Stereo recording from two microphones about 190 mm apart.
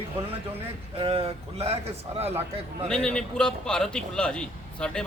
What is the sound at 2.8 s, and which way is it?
A man's voice, 5° left (ahead or behind).